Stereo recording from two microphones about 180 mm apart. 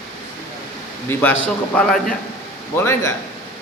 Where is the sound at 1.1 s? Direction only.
10° left (ahead or behind).